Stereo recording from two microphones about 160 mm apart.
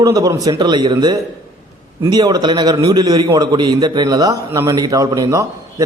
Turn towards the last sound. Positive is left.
turn(degrees=-20)  # may be behind; listen again after turning